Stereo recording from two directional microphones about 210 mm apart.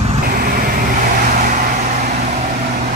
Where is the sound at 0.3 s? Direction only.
45° right (ahead or behind).